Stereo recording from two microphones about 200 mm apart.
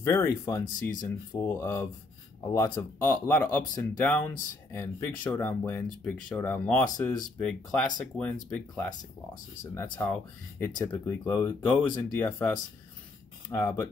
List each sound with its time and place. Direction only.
0.0 s speech: 15° left (ahead or behind)
0.7 s speech: 40° left (ahead or behind)
1.3 s speech: 15° left (ahead or behind)